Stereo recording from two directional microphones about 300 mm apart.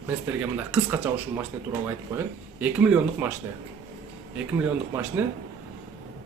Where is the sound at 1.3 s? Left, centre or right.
Centre.